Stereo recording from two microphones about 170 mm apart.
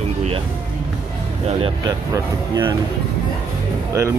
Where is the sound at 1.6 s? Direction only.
25° right (ahead or behind).